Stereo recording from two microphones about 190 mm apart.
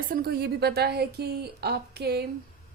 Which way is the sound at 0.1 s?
55° right (ahead or behind).